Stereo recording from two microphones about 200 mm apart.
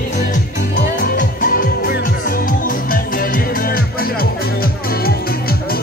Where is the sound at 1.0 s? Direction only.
45° left (ahead or behind).